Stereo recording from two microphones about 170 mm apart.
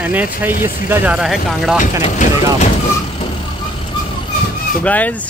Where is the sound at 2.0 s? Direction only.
45° left (ahead or behind).